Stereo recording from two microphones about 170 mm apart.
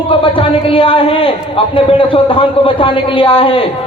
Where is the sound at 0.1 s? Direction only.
30° left (ahead or behind).